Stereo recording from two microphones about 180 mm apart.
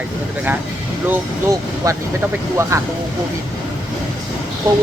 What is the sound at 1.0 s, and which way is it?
Speech, 15° right (ahead or behind).